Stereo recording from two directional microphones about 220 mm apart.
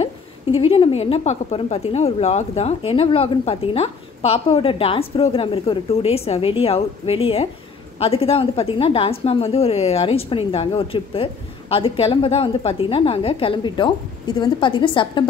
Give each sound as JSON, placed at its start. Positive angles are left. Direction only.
{"t": 0.6, "sound": "speech", "side_deg": 25}